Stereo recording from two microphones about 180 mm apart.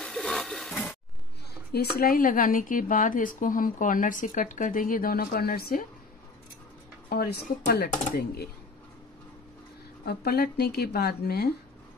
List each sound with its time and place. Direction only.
0.0 s a sound: 5° left (ahead or behind)
1.7 s a woman's voice: 60° left (ahead or behind)
7.1 s speech: 60° left (ahead or behind)
10.0 s speech: 60° left (ahead or behind)